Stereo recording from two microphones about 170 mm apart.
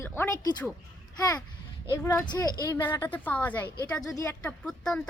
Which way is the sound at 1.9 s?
20° left (ahead or behind).